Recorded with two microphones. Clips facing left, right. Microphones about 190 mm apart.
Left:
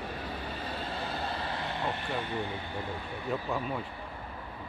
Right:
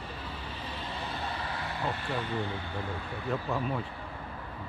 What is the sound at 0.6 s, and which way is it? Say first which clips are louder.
Vehicle: left 1 dB; 40° left (ahead or behind).